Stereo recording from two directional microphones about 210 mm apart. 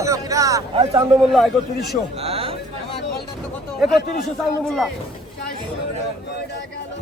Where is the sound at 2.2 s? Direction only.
30° right (ahead or behind).